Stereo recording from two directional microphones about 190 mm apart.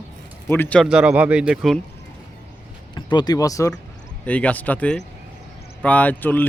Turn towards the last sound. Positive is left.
turn(degrees=10)  # may be behind; listen again after turning